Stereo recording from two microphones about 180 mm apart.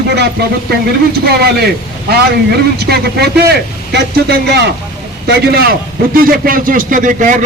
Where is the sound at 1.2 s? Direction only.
60° right (ahead or behind).